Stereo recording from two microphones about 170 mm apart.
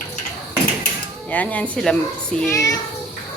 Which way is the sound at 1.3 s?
10° left (ahead or behind).